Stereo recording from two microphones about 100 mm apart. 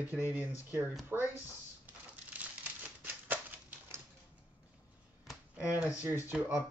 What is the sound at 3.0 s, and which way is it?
Typewriter, 20° right (ahead or behind).